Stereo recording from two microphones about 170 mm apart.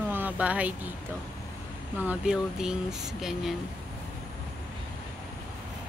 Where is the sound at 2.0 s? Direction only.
5° right (ahead or behind).